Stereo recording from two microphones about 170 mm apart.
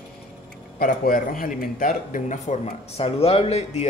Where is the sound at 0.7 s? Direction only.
55° left (ahead or behind).